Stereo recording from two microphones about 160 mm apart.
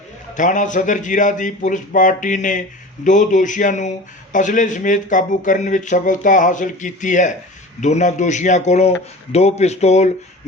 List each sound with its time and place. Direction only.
0.3 s speech: 50° left (ahead or behind)